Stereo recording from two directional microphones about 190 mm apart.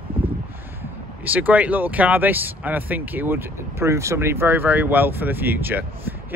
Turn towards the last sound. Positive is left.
turn(degrees=-10)  # may be behind; listen again after turning